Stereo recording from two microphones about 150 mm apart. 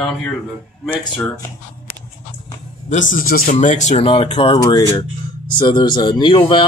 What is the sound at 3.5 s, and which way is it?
Speech, 50° left (ahead or behind).